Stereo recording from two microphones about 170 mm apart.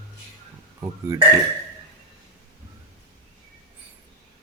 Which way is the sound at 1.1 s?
15° right (ahead or behind).